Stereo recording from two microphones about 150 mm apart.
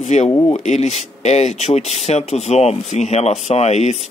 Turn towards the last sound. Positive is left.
turn(degrees=50)  # may be behind; listen again after turning